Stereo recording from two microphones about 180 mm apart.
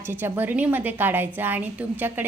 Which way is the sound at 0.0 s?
10° right (ahead or behind).